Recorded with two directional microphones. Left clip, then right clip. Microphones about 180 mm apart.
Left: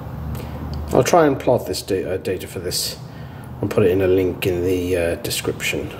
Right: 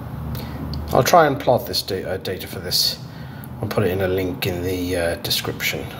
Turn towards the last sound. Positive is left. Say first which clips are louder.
# even
turn(degrees=35)  # may be behind; listen again after turning